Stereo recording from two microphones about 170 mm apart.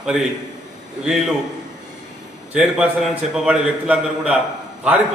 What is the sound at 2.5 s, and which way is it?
A man's voice, 5° right (ahead or behind).